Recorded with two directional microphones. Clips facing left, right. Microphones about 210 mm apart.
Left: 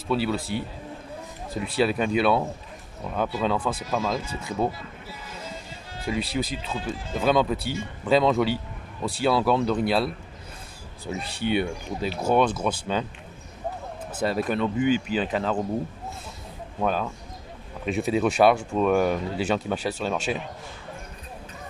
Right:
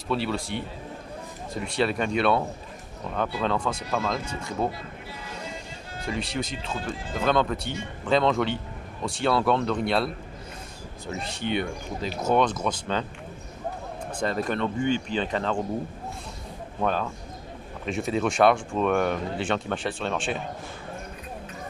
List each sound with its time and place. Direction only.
0.1 s speech: centre (ahead or behind)
5.9 s speech: 5° left (ahead or behind)
14.2 s speech: 5° left (ahead or behind)
16.8 s speech: 5° left (ahead or behind)